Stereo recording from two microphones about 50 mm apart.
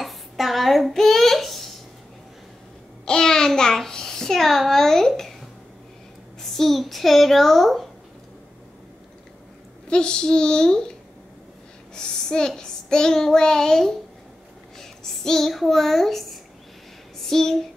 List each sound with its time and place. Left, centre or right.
0.0 s a sound: centre
3.1 s babbling: centre
6.4 s a woman's voice: centre
9.8 s child singing: centre
11.9 s child singing: centre
14.8 s speech: centre
17.2 s a sound: centre